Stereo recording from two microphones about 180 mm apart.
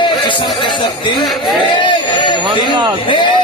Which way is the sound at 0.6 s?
25° left (ahead or behind).